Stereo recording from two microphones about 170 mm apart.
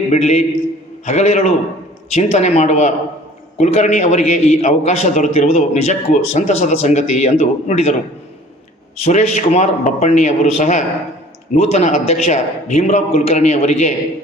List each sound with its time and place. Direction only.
0.1 s a man's voice: 40° left (ahead or behind)
9.0 s a man's voice: 40° left (ahead or behind)